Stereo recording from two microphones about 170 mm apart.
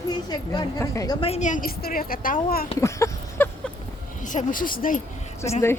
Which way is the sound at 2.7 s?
15° left (ahead or behind).